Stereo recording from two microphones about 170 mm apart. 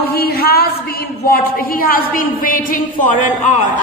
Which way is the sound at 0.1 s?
65° left (ahead or behind).